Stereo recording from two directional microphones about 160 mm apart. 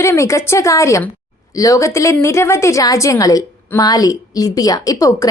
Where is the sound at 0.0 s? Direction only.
20° left (ahead or behind).